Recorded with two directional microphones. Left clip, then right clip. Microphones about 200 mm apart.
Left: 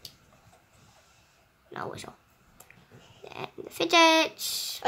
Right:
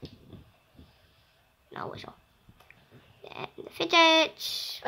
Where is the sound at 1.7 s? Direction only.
Centre (ahead or behind).